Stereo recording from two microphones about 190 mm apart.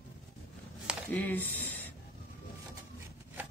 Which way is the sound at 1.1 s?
10° left (ahead or behind).